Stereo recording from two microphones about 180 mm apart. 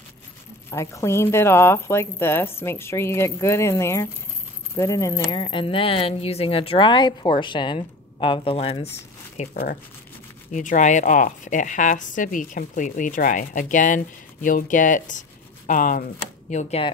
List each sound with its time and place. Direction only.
0.7 s a woman's voice: 15° left (ahead or behind); by 8.8 s 30° left (ahead or behind)
9.4 s a woman's voice: 50° left (ahead or behind)